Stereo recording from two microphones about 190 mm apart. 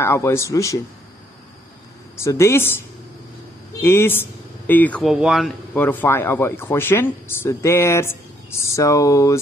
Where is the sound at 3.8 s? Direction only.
15° left (ahead or behind).